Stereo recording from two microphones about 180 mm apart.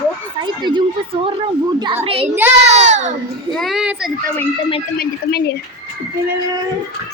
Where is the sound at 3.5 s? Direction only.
Centre (ahead or behind).